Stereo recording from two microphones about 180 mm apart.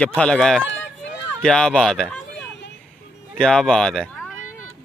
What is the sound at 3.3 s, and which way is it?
Speech, 5° left (ahead or behind).